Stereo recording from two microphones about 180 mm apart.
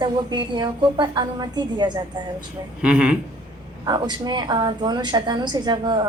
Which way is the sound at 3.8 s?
25° right (ahead or behind).